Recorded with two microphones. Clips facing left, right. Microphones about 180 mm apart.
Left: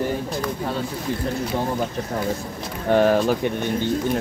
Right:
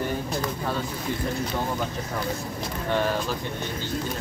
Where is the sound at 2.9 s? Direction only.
55° left (ahead or behind).